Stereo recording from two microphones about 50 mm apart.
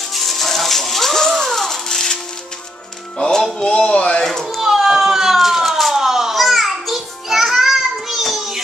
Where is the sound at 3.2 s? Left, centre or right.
Centre.